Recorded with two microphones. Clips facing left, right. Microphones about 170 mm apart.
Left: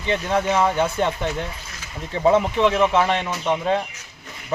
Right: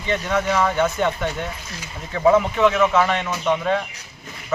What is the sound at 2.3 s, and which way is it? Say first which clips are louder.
A man's voice: right 1 dB; 30° left (ahead or behind).